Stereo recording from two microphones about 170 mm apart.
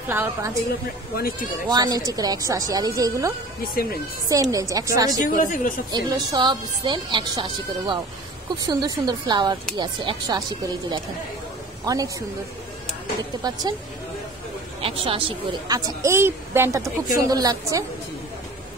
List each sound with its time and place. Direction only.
0.1 s a woman's voice: 15° right (ahead or behind)
1.1 s speech: 60° left (ahead or behind)
1.7 s speech: 20° right (ahead or behind)
5.4 s speech: 50° left (ahead or behind)
5.9 s speech: 20° right (ahead or behind)
11.8 s a man's voice: 20° right (ahead or behind)
13.4 s speech: 20° right (ahead or behind)
14.8 s speech: 35° right (ahead or behind)
16.0 s a woman's voice: 15° right (ahead or behind)